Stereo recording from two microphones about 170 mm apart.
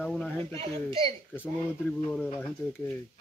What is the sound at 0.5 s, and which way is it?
Speech, 30° right (ahead or behind).